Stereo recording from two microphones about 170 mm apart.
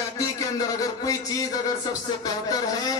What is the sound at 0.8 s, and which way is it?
A man's voice, 20° left (ahead or behind).